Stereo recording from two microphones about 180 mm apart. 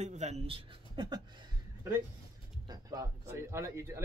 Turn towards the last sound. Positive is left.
turn(degrees=-15)  # may be behind; listen again after turning